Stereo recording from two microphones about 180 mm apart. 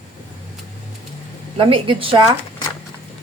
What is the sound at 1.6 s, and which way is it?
Speech, 30° right (ahead or behind).